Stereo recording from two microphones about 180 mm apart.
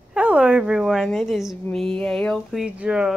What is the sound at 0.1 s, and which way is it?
A woman's voice, 5° right (ahead or behind).